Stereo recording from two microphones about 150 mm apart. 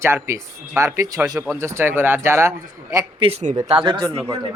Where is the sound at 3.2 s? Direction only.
50° right (ahead or behind).